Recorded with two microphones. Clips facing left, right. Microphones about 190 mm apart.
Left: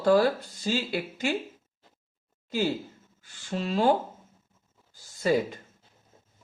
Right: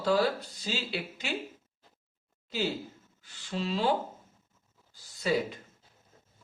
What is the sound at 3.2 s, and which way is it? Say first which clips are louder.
Speech: left 2 dB; 50° left (ahead or behind).